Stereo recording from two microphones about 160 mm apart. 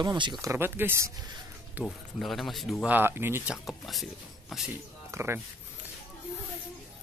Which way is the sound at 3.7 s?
Centre (ahead or behind).